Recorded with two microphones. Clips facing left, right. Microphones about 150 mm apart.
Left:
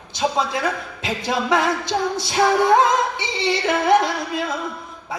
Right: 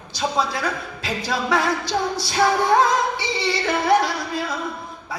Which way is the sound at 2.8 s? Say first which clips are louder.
Left 1 dB; 20° left (ahead or behind).